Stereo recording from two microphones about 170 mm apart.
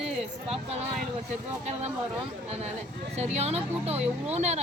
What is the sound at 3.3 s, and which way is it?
Speech, 40° right (ahead or behind).